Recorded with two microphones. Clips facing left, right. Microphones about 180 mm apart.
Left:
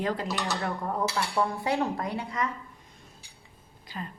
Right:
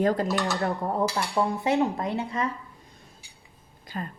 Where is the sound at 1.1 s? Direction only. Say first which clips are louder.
Right 2 dB; 20° right (ahead or behind).